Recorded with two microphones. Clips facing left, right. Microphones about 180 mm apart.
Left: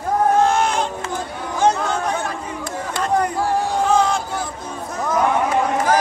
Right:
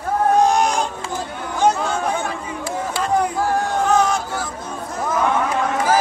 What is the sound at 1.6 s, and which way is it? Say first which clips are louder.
Chatter: even; 5° right (ahead or behind).